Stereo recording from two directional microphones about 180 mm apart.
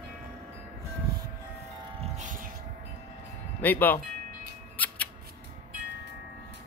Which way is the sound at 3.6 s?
10° left (ahead or behind).